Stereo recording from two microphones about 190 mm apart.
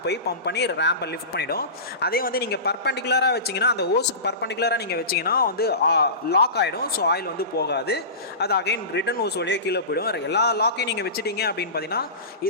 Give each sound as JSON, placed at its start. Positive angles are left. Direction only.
{"t": 0.0, "sound": "a man's voice", "side_deg": 60}